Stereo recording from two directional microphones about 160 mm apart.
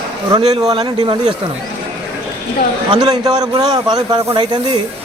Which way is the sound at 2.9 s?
25° right (ahead or behind).